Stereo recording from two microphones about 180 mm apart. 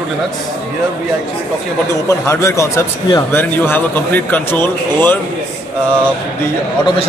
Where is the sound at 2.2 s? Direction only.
15° left (ahead or behind).